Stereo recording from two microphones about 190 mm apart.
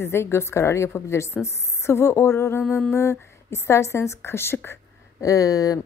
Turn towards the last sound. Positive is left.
turn(degrees=20)  # may be behind; listen again after turning